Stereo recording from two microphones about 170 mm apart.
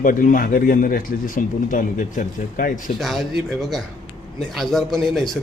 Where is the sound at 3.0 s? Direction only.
Centre (ahead or behind).